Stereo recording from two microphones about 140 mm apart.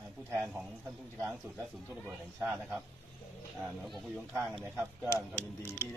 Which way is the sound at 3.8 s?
Centre (ahead or behind).